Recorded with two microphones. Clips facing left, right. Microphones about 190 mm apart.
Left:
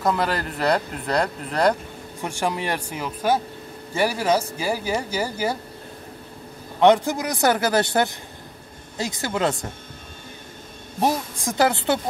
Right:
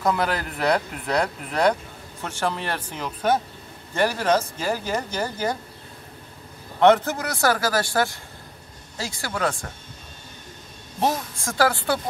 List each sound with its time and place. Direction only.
0.0 s speech: centre (ahead or behind)
2.2 s speech: 15° left (ahead or behind)
6.8 s speech: 15° left (ahead or behind)
11.0 s speech: 15° left (ahead or behind)